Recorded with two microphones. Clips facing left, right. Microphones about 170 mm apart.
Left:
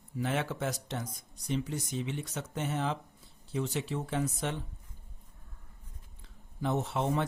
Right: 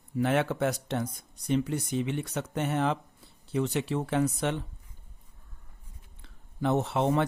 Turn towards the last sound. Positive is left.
turn(degrees=-70)  # may be behind; listen again after turning